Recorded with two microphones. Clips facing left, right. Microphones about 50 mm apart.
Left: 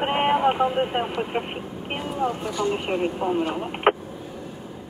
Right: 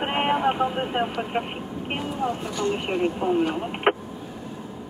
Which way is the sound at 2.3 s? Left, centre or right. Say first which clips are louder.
Even; centre.